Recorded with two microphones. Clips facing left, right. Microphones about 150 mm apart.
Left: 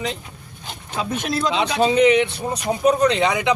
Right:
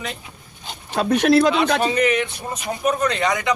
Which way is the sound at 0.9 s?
70° right (ahead or behind).